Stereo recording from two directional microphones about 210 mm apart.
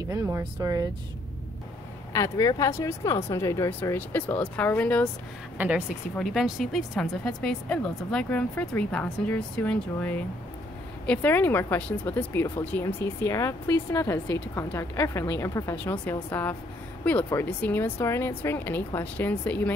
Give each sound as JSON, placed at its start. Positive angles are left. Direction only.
{"t": 0.1, "sound": "speech", "side_deg": -15}
{"t": 2.1, "sound": "speech", "side_deg": 15}
{"t": 5.6, "sound": "speech", "side_deg": -5}